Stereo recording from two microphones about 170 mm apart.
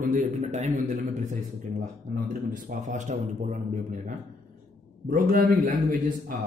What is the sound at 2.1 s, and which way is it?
A man's voice, 50° right (ahead or behind).